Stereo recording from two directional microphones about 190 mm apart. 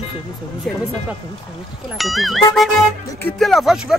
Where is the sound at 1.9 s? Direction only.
Centre (ahead or behind).